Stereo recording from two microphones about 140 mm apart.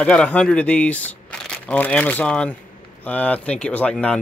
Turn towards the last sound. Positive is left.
turn(degrees=10)  # may be behind; listen again after turning